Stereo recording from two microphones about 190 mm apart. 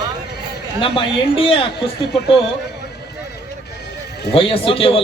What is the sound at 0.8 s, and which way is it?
A man's voice, 30° left (ahead or behind).